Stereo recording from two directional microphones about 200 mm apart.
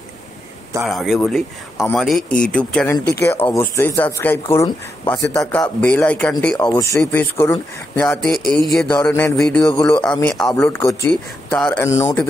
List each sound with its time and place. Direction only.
0.8 s speech: centre (ahead or behind)
6.7 s speech: 15° left (ahead or behind)